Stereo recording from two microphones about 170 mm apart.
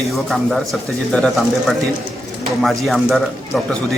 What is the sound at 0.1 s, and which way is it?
Speech, centre (ahead or behind).